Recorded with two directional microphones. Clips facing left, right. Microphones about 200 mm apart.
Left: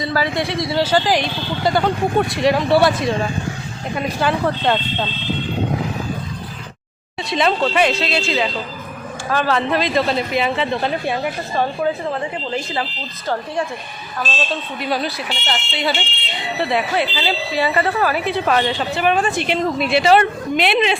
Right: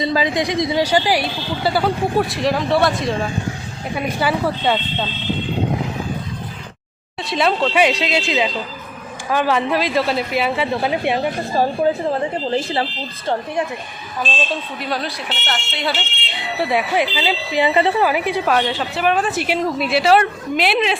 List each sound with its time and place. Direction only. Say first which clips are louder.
0.0 s speech: right 2 dB; 15° right (ahead or behind)
7.2 s speech: even; centre (ahead or behind)
11.0 s a woman's voice: right 3 dB; 20° right (ahead or behind)
11.5 s speech: right 3 dB; 35° right (ahead or behind)
14.2 s speech: right 1 dB; 5° left (ahead or behind)
16.6 s speech: right 1 dB; 10° right (ahead or behind)